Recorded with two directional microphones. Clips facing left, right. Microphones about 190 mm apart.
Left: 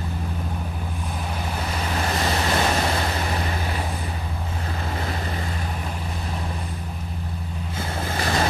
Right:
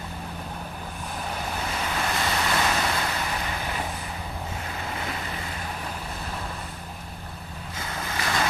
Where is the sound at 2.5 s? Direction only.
30° left (ahead or behind).